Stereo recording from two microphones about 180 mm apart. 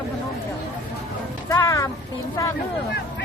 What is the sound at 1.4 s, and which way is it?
Speech, 15° left (ahead or behind).